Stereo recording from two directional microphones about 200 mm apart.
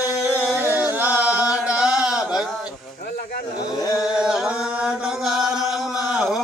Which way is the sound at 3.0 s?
50° left (ahead or behind).